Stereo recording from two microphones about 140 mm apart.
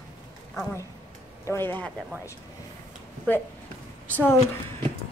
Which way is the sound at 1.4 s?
15° left (ahead or behind).